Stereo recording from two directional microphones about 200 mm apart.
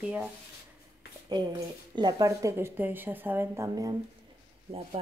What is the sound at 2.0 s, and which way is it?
A woman's voice, 20° right (ahead or behind).